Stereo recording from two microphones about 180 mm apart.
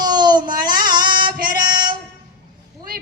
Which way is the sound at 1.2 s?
25° right (ahead or behind).